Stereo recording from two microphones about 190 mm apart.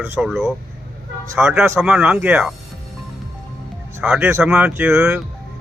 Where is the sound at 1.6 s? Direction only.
10° right (ahead or behind).